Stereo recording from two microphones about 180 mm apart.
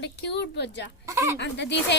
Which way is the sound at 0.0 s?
70° left (ahead or behind).